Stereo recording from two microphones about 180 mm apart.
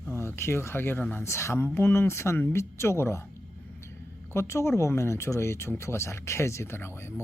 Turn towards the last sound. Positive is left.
turn(degrees=15)  # may be behind; listen again after turning